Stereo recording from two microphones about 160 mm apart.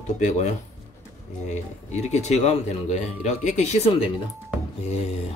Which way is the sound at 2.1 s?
45° left (ahead or behind).